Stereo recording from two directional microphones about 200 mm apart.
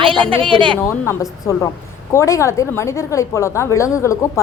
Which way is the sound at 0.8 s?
15° left (ahead or behind).